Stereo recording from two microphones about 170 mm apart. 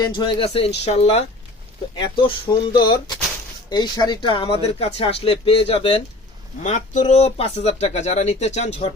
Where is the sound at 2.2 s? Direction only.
25° left (ahead or behind).